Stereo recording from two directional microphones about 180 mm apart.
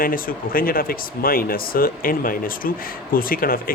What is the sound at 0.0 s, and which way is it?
Speech, 50° left (ahead or behind).